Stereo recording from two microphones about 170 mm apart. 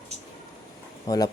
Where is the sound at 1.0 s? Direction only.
25° left (ahead or behind).